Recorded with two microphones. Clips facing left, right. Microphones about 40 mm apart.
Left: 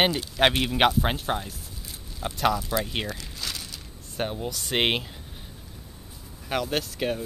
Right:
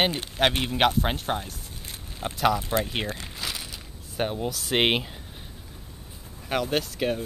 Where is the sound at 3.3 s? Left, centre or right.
Centre.